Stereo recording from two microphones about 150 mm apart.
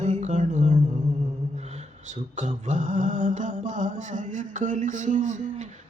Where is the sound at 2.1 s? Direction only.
50° right (ahead or behind).